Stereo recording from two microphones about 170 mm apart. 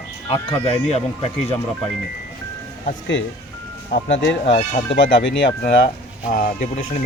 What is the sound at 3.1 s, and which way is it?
Speech, 90° left.